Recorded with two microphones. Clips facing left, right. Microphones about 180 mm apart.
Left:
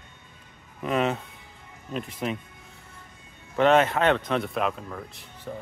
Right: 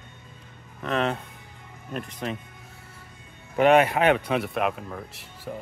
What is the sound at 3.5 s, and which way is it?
Speech, 10° right (ahead or behind).